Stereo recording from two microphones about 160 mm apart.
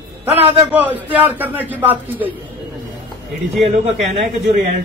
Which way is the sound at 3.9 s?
40° right (ahead or behind).